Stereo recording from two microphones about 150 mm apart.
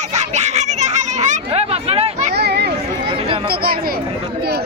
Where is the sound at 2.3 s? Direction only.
90° right.